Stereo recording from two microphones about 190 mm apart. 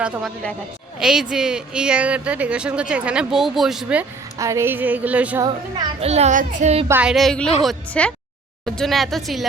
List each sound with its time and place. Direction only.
0.0 s a woman's voice: 5° right (ahead or behind)
4.4 s female singing: 15° right (ahead or behind)
5.5 s a child's voice: 25° right (ahead or behind)
6.8 s a woman's voice: 10° right (ahead or behind)